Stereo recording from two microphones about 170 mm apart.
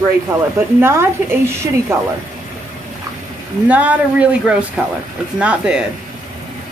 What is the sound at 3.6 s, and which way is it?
Speech, 10° right (ahead or behind).